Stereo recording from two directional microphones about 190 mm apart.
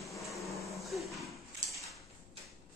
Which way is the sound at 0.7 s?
Centre (ahead or behind).